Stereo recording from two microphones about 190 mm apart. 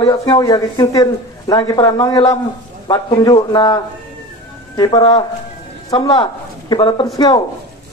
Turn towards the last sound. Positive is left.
turn(degrees=25)  # may be behind; listen again after turning